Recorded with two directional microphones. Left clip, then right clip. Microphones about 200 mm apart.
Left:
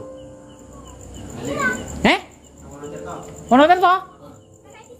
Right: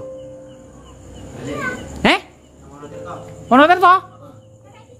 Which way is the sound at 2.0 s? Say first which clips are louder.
Right 2 dB; 20° right (ahead or behind).